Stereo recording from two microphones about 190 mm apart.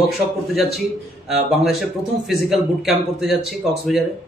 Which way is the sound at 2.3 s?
Centre (ahead or behind).